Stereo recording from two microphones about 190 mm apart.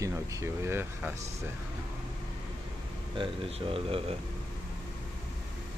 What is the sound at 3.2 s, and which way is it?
Speech, 30° right (ahead or behind).